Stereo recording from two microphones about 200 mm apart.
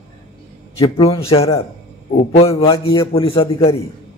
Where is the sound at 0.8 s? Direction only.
25° left (ahead or behind).